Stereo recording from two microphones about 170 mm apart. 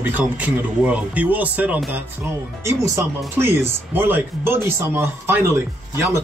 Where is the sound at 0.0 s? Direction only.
10° right (ahead or behind).